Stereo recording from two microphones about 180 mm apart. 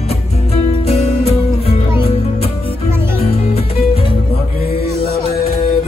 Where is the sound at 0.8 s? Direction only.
35° left (ahead or behind).